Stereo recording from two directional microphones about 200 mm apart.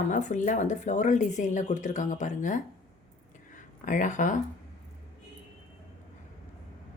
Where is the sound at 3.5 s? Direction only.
40° left (ahead or behind).